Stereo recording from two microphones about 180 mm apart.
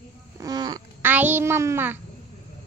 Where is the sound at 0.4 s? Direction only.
20° right (ahead or behind).